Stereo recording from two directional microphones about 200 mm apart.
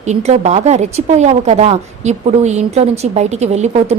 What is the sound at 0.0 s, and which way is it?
A woman's voice, 35° right (ahead or behind).